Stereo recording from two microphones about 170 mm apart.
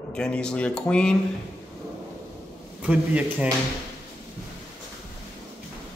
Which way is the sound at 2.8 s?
10° right (ahead or behind).